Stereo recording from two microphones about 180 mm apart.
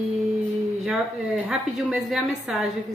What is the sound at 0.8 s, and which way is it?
A woman's voice, 5° right (ahead or behind).